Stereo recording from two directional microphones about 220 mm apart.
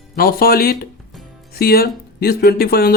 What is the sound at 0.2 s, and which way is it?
Speech, 45° left (ahead or behind).